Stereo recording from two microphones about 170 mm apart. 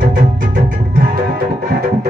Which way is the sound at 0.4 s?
55° right (ahead or behind).